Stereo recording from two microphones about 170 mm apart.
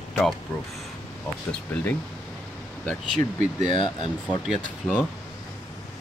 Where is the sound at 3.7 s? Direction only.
30° left (ahead or behind).